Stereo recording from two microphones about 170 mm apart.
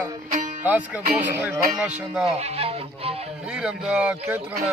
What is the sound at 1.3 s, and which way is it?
Music, 10° right (ahead or behind).